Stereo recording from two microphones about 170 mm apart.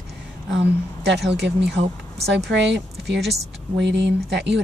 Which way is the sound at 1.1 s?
85° right.